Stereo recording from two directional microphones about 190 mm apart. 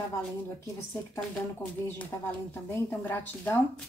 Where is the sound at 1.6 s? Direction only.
10° left (ahead or behind).